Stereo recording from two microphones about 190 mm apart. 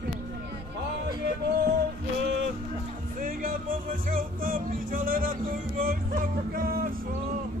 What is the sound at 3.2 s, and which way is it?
Music, 45° right (ahead or behind).